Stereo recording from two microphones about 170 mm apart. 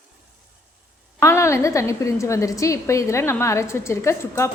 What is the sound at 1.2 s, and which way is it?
A woman's voice, 15° left (ahead or behind).